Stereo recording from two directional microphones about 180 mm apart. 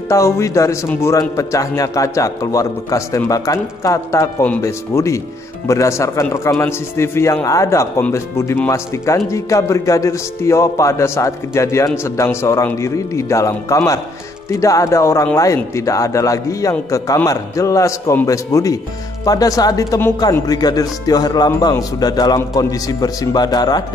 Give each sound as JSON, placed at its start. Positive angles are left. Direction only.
{"t": 0.1, "sound": "a man's voice", "side_deg": 15}